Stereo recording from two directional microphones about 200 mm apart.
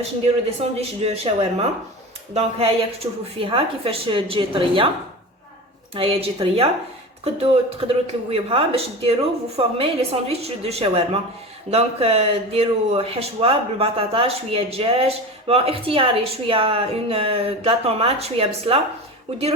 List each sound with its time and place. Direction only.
0.6 s speech: 30° right (ahead or behind)
5.9 s speech: 30° right (ahead or behind)